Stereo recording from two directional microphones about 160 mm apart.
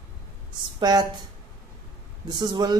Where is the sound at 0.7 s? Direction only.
25° right (ahead or behind).